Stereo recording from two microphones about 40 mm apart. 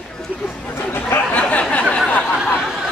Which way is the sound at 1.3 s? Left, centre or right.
Left.